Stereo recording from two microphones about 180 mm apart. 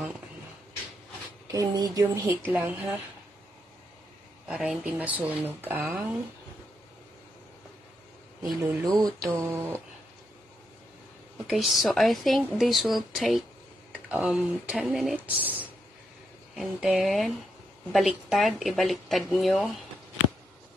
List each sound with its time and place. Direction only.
1.5 s speech: 20° right (ahead or behind)
4.5 s speech: 5° right (ahead or behind)
8.5 s speech: 15° right (ahead or behind)
11.4 s speech: centre (ahead or behind)